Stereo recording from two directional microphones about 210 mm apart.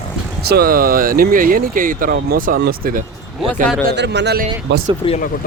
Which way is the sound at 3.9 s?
55° right (ahead or behind).